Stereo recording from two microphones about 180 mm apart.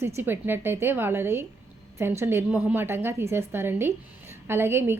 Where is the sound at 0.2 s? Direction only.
10° right (ahead or behind).